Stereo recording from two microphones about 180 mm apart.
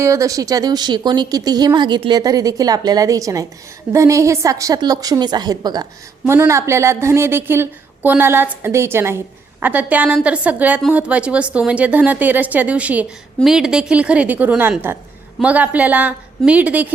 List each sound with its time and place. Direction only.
0.0 s a woman's voice: 15° right (ahead or behind)